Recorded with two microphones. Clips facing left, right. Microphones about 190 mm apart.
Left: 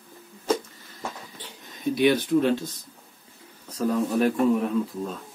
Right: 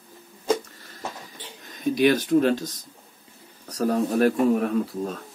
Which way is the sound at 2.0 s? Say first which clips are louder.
Right 1 dB; 45° right (ahead or behind).